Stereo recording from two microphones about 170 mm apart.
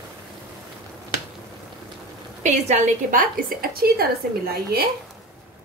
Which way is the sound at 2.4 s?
45° right (ahead or behind).